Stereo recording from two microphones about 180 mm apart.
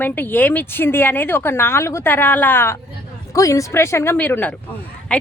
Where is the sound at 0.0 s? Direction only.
10° left (ahead or behind).